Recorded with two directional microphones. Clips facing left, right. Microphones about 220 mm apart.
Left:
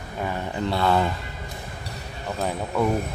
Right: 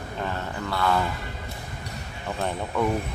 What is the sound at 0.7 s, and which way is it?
Speech, 25° left (ahead or behind).